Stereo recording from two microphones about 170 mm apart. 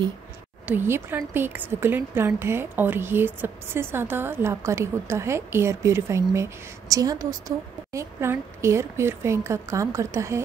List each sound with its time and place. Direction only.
0.7 s a woman's voice: 15° right (ahead or behind)